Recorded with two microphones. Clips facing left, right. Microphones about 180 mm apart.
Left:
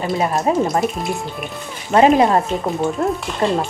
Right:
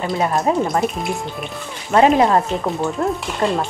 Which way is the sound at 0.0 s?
20° left (ahead or behind).